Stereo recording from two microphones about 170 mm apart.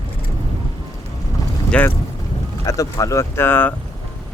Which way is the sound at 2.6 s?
20° left (ahead or behind).